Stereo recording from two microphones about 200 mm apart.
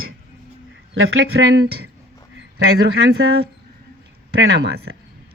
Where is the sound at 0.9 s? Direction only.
75° right (ahead or behind).